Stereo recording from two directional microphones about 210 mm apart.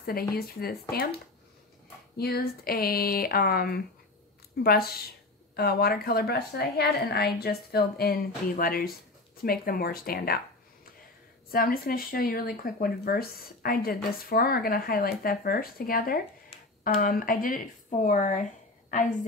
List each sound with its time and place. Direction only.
0.0 s speech: 45° left (ahead or behind)
2.1 s speech: 45° left (ahead or behind)
11.5 s speech: 45° left (ahead or behind)